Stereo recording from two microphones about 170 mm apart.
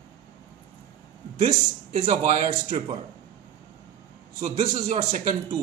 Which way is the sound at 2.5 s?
35° right (ahead or behind).